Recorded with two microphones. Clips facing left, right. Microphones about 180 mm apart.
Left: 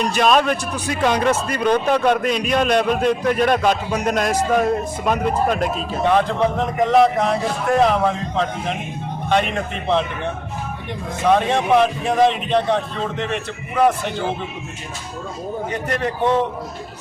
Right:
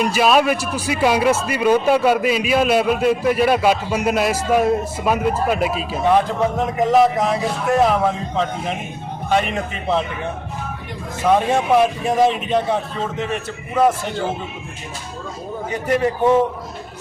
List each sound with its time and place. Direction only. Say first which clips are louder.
0.0 s a man's voice: right 1 dB; 5° right (ahead or behind)
11.3 s a man's voice: right 2 dB; 5° right (ahead or behind)
15.7 s speech: right 7 dB; 5° right (ahead or behind)